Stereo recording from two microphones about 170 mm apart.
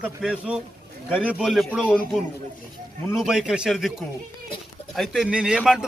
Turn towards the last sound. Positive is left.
turn(degrees=-5)  # may be behind; listen again after turning